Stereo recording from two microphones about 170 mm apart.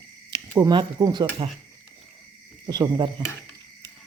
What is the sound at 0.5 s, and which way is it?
Speech, 20° right (ahead or behind).